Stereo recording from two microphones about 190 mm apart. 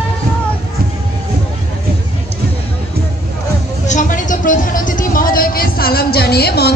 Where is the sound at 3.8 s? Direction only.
40° left (ahead or behind).